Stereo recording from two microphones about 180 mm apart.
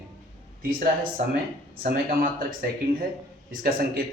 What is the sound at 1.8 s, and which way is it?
Speech, 55° right (ahead or behind).